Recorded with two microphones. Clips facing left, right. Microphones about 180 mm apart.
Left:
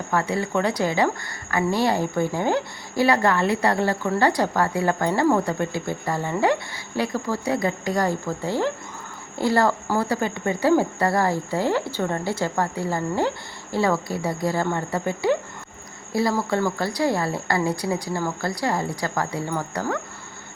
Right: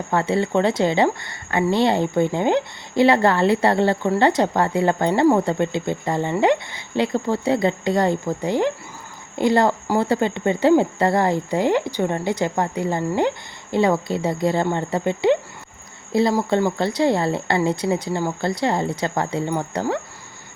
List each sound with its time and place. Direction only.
0.1 s speech: 25° right (ahead or behind)